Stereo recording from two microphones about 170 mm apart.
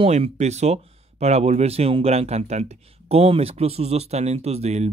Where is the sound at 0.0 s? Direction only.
35° right (ahead or behind).